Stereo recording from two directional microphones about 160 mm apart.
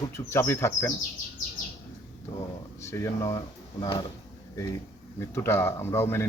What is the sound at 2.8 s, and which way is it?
Speech, 20° left (ahead or behind).